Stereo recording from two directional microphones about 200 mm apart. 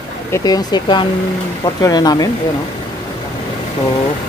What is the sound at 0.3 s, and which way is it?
Speech, 20° left (ahead or behind).